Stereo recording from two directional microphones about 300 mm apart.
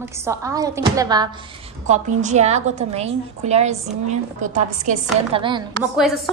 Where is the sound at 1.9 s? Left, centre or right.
Right.